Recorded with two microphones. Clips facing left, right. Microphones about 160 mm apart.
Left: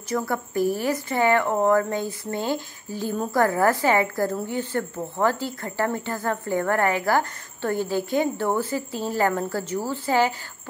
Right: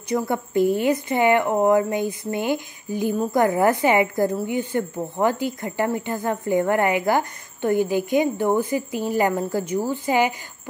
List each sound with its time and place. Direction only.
0.1 s a woman's voice: 20° right (ahead or behind)